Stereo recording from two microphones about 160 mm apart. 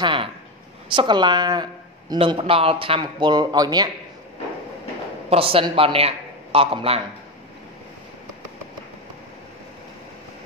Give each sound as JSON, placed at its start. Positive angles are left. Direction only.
{"t": 0.0, "sound": "speech", "side_deg": -30}
{"t": 5.3, "sound": "speech", "side_deg": -35}